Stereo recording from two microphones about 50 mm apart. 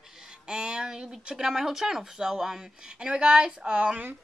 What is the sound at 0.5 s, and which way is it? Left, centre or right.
Speech, centre.